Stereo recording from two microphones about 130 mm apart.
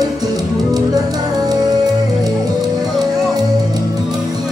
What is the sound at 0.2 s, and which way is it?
Music, 30° right (ahead or behind).